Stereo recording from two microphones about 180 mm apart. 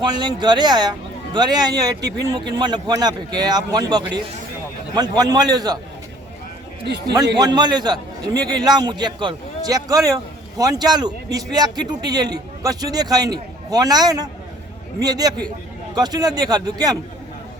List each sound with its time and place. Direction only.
0.0 s a man's voice: 25° right (ahead or behind)
2.0 s speech: 70° right (ahead or behind)
2.6 s a man's voice: 25° right (ahead or behind)
7.3 s a man's voice: 25° right (ahead or behind)